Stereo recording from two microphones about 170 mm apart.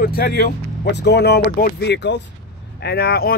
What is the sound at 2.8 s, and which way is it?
Speech, 70° left (ahead or behind).